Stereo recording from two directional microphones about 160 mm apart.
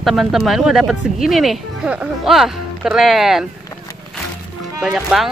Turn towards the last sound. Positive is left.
turn(degrees=-5)  # may be behind; listen again after turning